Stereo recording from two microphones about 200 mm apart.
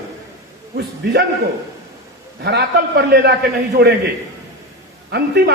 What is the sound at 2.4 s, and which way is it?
A man's voice, 55° right (ahead or behind).